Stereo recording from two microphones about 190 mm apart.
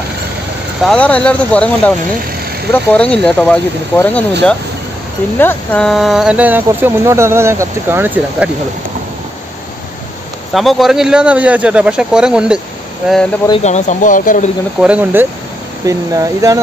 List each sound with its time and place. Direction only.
0.8 s speech: 5° left (ahead or behind)
5.4 s speech: 10° left (ahead or behind); by 8.5 s 10° right (ahead or behind)
10.5 s speech: centre (ahead or behind)
13.5 s speech: 35° left (ahead or behind)
14.8 s speech: 5° right (ahead or behind)
15.8 s speech: 20° right (ahead or behind)